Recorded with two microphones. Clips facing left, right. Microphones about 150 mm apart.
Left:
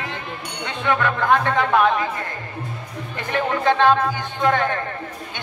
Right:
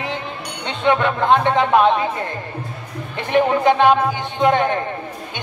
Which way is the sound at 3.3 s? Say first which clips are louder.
Right 5 dB; 15° right (ahead or behind).